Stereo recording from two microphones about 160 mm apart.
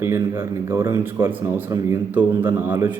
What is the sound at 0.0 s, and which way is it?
Speech, 15° right (ahead or behind).